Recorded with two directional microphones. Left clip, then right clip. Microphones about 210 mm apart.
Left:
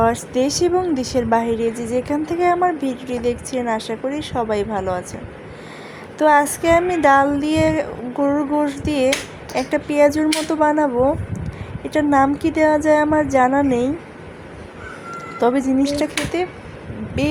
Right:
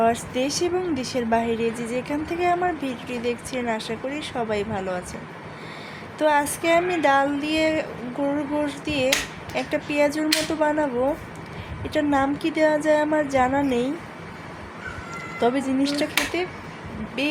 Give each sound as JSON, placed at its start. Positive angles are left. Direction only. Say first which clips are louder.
{"t": 0.0, "sound": "a woman's voice", "louder": "left 4 dB", "side_deg": 25}
{"t": 6.1, "sound": "a woman's voice", "louder": "left 6 dB", "side_deg": 25}
{"t": 15.1, "sound": "a woman's voice", "louder": "left 5 dB", "side_deg": 20}